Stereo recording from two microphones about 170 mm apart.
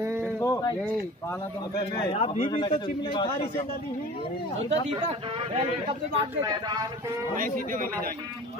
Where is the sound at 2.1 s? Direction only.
35° left (ahead or behind).